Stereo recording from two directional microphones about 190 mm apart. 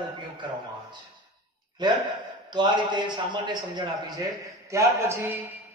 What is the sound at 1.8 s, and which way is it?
A man's voice, 20° right (ahead or behind).